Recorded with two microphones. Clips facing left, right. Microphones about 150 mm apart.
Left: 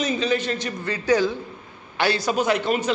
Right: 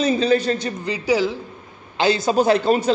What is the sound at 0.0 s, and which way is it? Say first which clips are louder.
Speech: right 5 dB; 30° right (ahead or behind).